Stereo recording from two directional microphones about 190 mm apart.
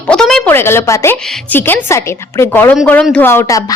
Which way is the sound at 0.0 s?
5° left (ahead or behind).